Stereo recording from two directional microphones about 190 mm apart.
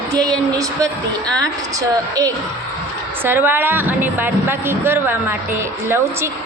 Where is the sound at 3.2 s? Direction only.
10° right (ahead or behind).